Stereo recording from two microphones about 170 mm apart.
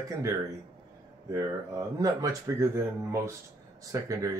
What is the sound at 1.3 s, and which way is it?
Speech, 20° right (ahead or behind).